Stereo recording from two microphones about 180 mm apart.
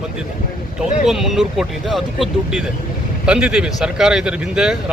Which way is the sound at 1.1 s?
Centre (ahead or behind).